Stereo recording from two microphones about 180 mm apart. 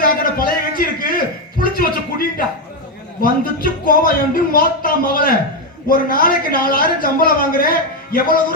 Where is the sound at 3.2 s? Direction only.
55° left (ahead or behind).